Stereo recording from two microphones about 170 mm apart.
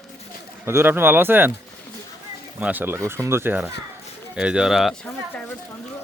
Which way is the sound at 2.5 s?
10° right (ahead or behind).